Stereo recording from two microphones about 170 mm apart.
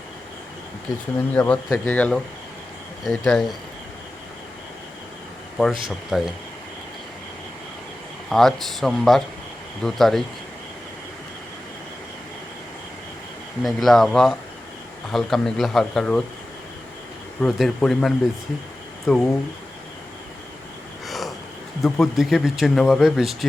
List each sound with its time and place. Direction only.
1.3 s speech: 10° left (ahead or behind)
5.6 s speech: 5° right (ahead or behind)
8.3 s speech: centre (ahead or behind)
13.6 s speech: centre (ahead or behind)
17.4 s speech: 5° left (ahead or behind)
21.1 s a sound: centre (ahead or behind)
21.8 s speech: centre (ahead or behind)